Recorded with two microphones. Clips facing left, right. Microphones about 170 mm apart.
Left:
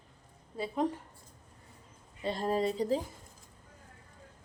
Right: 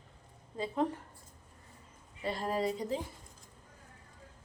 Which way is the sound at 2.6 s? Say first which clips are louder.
Left 4 dB; 30° left (ahead or behind).